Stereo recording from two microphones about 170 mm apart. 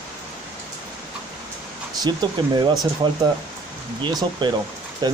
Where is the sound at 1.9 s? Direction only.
25° right (ahead or behind).